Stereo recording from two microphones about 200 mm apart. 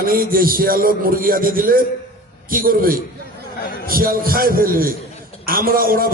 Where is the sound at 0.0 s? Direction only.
45° right (ahead or behind).